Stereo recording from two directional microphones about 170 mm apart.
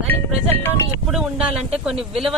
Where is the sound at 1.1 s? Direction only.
5° right (ahead or behind).